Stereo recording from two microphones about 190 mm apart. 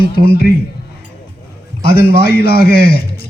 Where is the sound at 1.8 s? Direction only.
55° left (ahead or behind).